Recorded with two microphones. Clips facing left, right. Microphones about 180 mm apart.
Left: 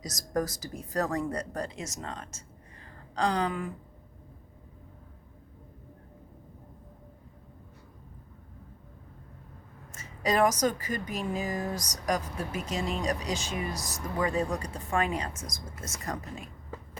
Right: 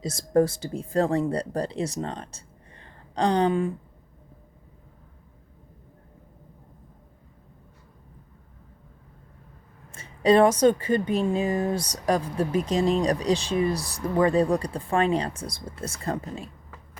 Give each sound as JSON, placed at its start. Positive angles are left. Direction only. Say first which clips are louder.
{"t": 0.0, "sound": "speech", "louder": "right 9 dB", "side_deg": -30}
{"t": 2.8, "sound": "a sound", "louder": "right 5 dB", "side_deg": -30}
{"t": 9.9, "sound": "a woman's voice", "louder": "right 9 dB", "side_deg": -30}